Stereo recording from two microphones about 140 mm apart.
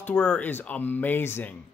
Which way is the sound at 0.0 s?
10° left (ahead or behind).